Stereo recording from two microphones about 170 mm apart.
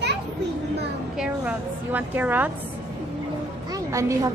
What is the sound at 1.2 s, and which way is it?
A woman's voice, 10° right (ahead or behind).